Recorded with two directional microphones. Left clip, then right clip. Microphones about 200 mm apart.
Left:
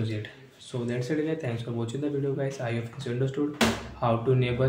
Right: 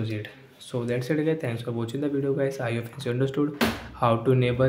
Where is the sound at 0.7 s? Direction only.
30° right (ahead or behind).